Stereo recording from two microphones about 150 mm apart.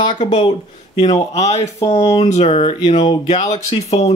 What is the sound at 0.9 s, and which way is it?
Speech, 45° left (ahead or behind).